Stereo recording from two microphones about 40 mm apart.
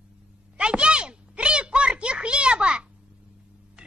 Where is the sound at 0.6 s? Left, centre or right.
Right.